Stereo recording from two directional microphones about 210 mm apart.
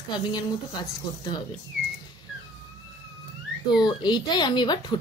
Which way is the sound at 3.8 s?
20° left (ahead or behind).